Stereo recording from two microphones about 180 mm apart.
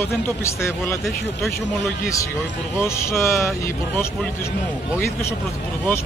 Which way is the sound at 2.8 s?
15° left (ahead or behind).